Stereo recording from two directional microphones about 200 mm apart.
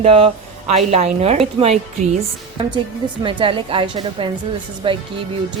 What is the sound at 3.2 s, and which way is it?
Speech, 25° right (ahead or behind).